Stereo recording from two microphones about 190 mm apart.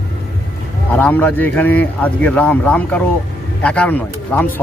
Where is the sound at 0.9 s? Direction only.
10° left (ahead or behind).